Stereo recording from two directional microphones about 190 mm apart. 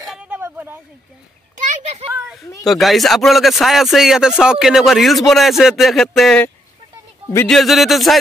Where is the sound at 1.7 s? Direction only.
35° right (ahead or behind).